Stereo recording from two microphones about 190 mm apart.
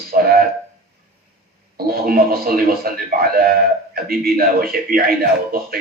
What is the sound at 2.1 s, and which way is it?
A man's voice, 50° right (ahead or behind).